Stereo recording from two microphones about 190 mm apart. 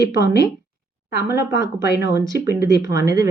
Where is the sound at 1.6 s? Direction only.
60° left (ahead or behind).